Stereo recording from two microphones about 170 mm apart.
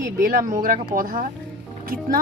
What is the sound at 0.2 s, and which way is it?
A woman's voice, 55° right (ahead or behind).